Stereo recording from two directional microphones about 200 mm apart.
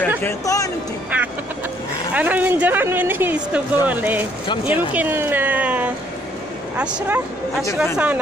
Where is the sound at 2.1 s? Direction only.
10° right (ahead or behind).